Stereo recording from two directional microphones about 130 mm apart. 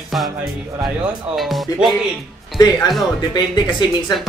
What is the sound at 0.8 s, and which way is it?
Speech, centre (ahead or behind).